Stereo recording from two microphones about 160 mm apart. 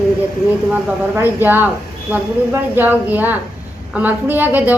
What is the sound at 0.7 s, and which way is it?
A woman's voice, 15° right (ahead or behind).